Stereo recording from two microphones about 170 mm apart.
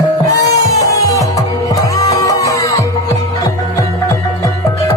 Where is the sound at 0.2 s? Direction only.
20° left (ahead or behind).